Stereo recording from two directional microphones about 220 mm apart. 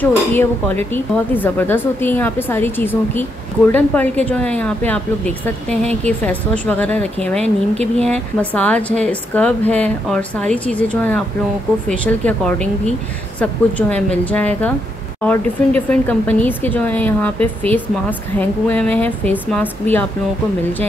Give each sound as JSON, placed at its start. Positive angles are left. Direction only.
{"t": 0.0, "sound": "a woman's voice", "side_deg": 10}
{"t": 7.7, "sound": "speech", "side_deg": -30}
{"t": 8.1, "sound": "a woman's voice", "side_deg": 5}